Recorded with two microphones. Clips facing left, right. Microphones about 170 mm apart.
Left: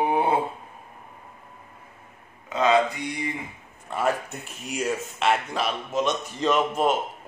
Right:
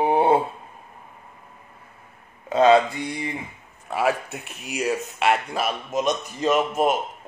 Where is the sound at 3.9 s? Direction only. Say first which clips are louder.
Right 2 dB; 5° right (ahead or behind).